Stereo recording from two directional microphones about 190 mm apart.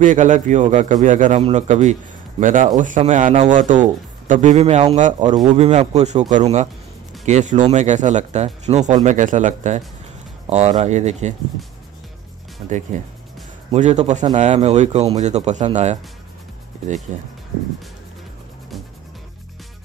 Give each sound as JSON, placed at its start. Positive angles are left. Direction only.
{"t": 0.0, "sound": "a man's voice", "side_deg": -40}
{"t": 12.6, "sound": "a man's voice", "side_deg": -40}
{"t": 17.1, "sound": "a man's voice", "side_deg": -40}